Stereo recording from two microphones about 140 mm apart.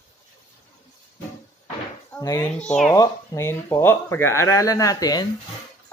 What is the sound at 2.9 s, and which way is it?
Speech, 25° left (ahead or behind).